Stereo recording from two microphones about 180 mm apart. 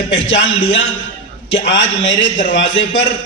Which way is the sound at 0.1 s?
90° left.